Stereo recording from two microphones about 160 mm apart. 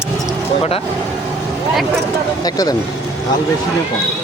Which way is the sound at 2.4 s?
25° left (ahead or behind).